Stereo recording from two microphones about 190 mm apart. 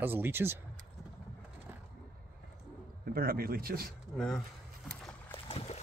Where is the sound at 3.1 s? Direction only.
50° right (ahead or behind).